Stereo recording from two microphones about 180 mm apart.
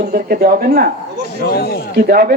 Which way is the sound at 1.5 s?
60° left (ahead or behind).